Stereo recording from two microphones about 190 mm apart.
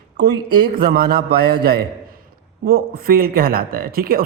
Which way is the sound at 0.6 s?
50° right (ahead or behind).